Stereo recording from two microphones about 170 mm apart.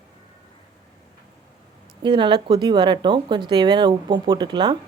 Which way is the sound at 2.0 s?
30° right (ahead or behind).